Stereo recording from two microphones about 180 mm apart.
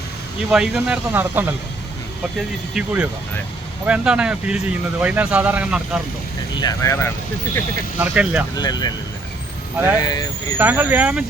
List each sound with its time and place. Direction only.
0.5 s speech: 5° right (ahead or behind)
2.7 s speech: 5° right (ahead or behind)
6.6 s speech: 20° left (ahead or behind)
7.9 s speech: 5° right (ahead or behind)
8.5 s speech: 25° left (ahead or behind)
9.9 s speech: 20° left (ahead or behind)
10.6 s speech: 10° right (ahead or behind)